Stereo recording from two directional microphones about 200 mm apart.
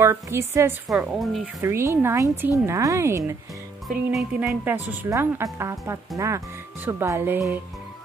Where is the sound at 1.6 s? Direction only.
10° right (ahead or behind).